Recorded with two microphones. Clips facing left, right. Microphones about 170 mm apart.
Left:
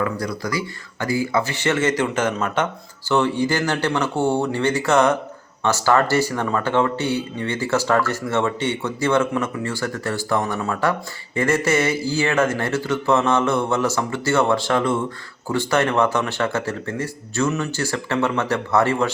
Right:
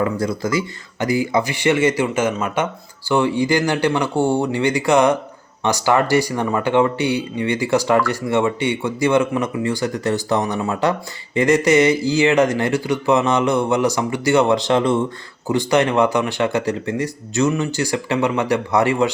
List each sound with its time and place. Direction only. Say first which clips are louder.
0.0 s speech: right 4 dB; 25° right (ahead or behind)